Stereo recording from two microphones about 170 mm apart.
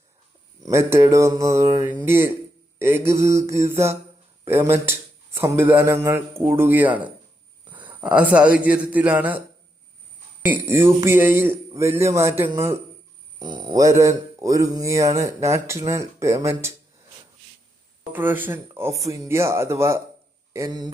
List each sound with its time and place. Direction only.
0.6 s speech: 15° right (ahead or behind)
7.7 s a sound: 10° right (ahead or behind)
8.6 s speech: 10° right (ahead or behind)
10.4 s speech: 10° right (ahead or behind)
13.4 s speech: 25° right (ahead or behind)
18.1 s speech: 10° right (ahead or behind)